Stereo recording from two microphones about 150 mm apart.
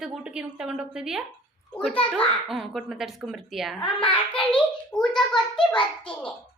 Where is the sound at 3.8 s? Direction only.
35° left (ahead or behind).